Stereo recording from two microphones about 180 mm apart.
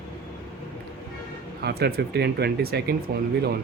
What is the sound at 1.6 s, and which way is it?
Speech, 60° right (ahead or behind).